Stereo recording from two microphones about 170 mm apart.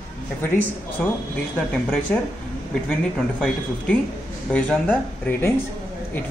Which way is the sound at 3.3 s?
5° left (ahead or behind).